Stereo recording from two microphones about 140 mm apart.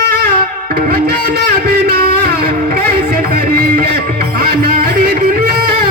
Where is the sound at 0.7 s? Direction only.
90° right.